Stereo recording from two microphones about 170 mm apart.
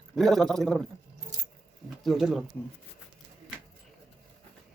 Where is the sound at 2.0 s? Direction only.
Centre (ahead or behind).